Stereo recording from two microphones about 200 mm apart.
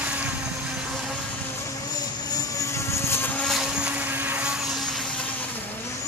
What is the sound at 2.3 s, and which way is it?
Vehicle, 15° left (ahead or behind).